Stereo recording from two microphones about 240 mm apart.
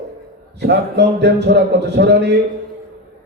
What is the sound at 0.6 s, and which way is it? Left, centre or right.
A man's voice, right.